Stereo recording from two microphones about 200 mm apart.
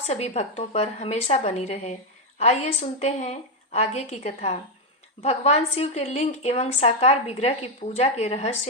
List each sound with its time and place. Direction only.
0.0 s a woman's voice: 30° left (ahead or behind)